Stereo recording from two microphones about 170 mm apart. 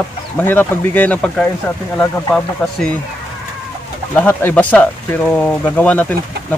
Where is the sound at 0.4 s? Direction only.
10° left (ahead or behind).